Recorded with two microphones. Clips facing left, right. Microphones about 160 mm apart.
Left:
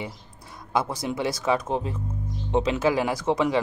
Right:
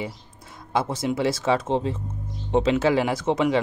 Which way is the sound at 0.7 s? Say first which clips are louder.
Right 2 dB; 25° right (ahead or behind).